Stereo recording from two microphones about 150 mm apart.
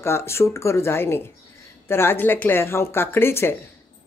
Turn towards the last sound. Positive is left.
turn(degrees=15)  # may be behind; listen again after turning